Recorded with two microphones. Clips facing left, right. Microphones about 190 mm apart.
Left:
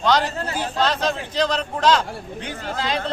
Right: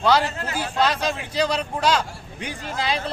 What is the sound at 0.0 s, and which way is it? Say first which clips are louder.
Speech: even; 10° right (ahead or behind).